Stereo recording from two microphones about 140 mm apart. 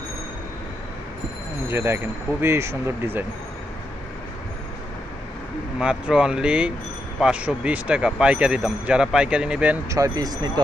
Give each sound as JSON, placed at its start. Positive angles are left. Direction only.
{"t": 1.7, "sound": "speech", "side_deg": -15}
{"t": 5.8, "sound": "speech", "side_deg": -5}
{"t": 9.8, "sound": "speech", "side_deg": -25}